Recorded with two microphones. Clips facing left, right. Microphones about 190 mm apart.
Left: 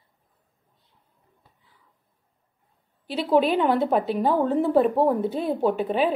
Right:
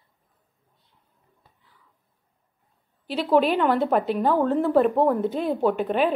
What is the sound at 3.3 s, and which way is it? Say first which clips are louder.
A woman's voice: even; 15° left (ahead or behind).